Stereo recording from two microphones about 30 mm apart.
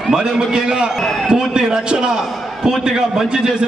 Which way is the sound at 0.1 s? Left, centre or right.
Right.